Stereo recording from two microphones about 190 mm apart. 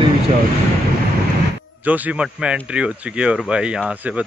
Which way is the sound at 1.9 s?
10° right (ahead or behind).